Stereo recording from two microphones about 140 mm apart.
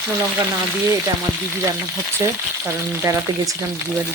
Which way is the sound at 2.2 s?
20° right (ahead or behind).